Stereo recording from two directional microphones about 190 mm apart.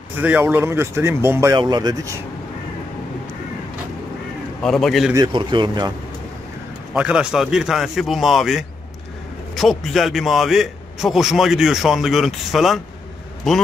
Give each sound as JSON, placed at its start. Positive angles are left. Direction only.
{"t": 0.2, "sound": "speech", "side_deg": -10}
{"t": 4.6, "sound": "a man's voice", "side_deg": 0}
{"t": 5.1, "sound": "speech", "side_deg": -25}
{"t": 6.9, "sound": "a man's voice", "side_deg": -5}